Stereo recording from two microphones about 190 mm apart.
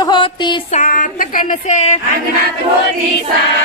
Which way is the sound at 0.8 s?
45° left (ahead or behind).